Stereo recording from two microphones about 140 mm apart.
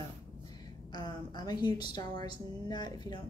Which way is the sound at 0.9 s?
30° left (ahead or behind).